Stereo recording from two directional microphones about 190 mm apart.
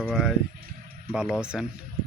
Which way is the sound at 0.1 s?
Centre (ahead or behind).